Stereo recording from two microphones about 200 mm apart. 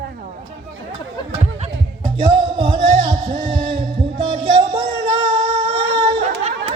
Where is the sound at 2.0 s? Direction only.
20° right (ahead or behind).